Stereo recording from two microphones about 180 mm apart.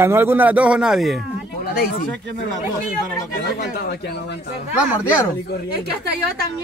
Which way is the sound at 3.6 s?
65° left (ahead or behind).